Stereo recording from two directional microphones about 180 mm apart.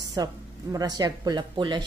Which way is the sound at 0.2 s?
20° right (ahead or behind).